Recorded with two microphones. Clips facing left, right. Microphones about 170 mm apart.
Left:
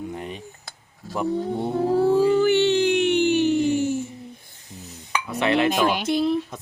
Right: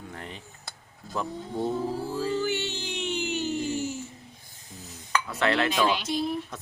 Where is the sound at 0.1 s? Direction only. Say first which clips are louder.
Left 8 dB; 15° left (ahead or behind).